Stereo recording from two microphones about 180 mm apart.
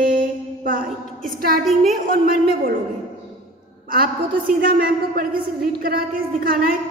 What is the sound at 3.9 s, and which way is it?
A woman's voice, 55° right (ahead or behind).